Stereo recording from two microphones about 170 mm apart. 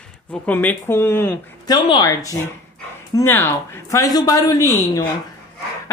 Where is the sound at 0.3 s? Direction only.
10° left (ahead or behind).